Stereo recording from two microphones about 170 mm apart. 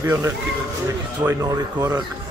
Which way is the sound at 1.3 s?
20° right (ahead or behind).